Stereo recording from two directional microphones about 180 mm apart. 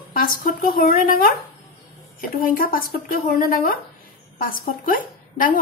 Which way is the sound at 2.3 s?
55° left (ahead or behind).